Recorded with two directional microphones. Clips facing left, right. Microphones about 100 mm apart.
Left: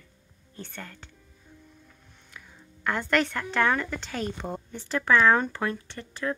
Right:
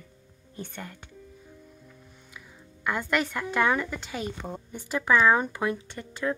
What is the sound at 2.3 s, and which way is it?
Speech, 5° right (ahead or behind).